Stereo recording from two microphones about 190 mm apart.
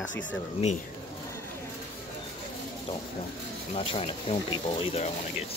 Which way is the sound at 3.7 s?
30° left (ahead or behind).